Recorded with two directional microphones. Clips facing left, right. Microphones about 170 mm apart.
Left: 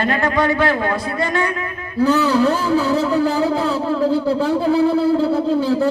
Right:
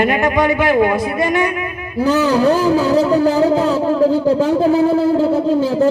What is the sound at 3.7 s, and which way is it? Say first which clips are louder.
Speech: right 4 dB; 40° right (ahead or behind).